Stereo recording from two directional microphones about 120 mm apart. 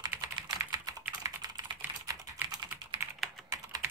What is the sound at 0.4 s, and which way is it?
Typing, 35° right (ahead or behind).